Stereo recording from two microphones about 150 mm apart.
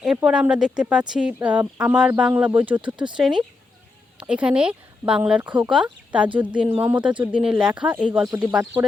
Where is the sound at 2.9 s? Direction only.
30° right (ahead or behind).